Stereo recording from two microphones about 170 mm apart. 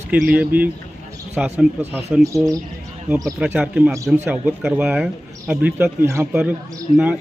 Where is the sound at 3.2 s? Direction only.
5° right (ahead or behind).